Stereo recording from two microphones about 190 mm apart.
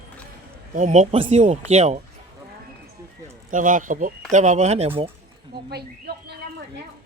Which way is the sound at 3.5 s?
45° right (ahead or behind).